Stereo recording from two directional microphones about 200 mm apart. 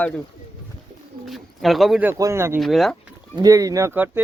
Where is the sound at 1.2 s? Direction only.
Centre (ahead or behind).